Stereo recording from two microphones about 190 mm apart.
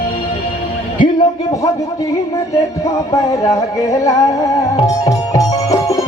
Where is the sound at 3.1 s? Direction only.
15° left (ahead or behind).